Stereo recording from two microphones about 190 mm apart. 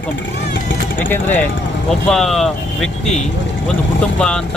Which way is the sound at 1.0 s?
10° left (ahead or behind).